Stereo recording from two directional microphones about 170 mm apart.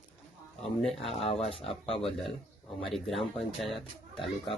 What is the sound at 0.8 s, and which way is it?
Speech, centre (ahead or behind).